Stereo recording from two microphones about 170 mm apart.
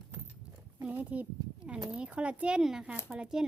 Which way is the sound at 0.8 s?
10° right (ahead or behind).